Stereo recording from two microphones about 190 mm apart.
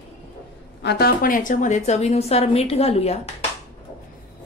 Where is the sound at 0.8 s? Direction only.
60° left (ahead or behind); by 3.2 s 35° left (ahead or behind).